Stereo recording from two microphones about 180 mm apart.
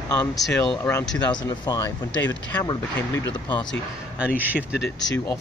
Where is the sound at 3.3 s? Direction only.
25° left (ahead or behind).